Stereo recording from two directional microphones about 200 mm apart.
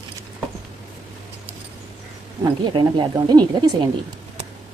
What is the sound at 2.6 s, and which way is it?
A woman's voice, 25° right (ahead or behind).